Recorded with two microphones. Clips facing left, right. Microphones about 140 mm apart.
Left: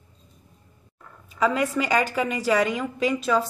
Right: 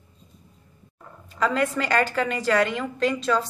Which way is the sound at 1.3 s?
5° left (ahead or behind).